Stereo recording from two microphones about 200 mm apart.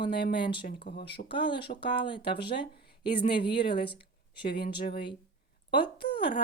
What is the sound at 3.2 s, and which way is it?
Speech, 25° left (ahead or behind).